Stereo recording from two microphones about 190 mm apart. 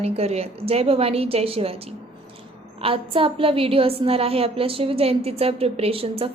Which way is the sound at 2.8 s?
30° right (ahead or behind).